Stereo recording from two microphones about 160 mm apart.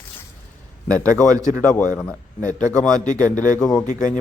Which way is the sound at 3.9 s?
50° left (ahead or behind).